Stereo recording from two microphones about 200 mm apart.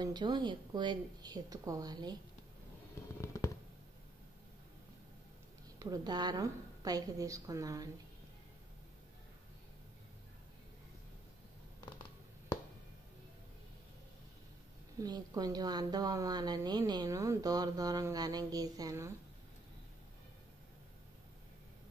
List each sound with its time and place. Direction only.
0.0 s a woman's voice: 20° right (ahead or behind)
3.2 s fireworks: 15° left (ahead or behind)
5.8 s a woman's voice: 20° right (ahead or behind)
15.0 s a woman's voice: 20° right (ahead or behind)